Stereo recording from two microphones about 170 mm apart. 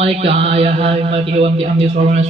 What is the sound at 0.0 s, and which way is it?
A man's voice, 35° right (ahead or behind).